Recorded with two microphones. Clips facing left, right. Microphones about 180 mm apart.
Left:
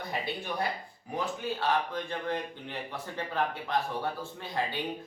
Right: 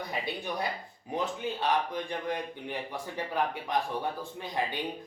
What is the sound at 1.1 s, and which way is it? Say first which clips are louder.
A man's voice: right 1 dB; 20° right (ahead or behind).